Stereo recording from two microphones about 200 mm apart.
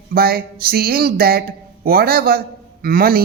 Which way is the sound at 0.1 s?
50° right (ahead or behind).